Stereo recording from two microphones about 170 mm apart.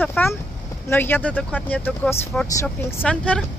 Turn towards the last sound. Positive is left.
turn(degrees=5)  # may be behind; listen again after turning